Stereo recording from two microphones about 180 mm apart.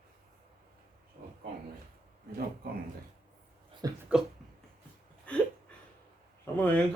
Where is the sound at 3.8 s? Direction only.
20° right (ahead or behind).